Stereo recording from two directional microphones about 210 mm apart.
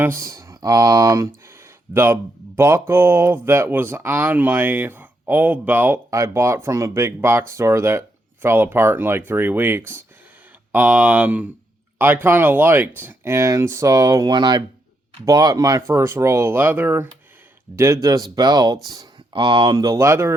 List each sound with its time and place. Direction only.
0.0 s speech: 10° right (ahead or behind)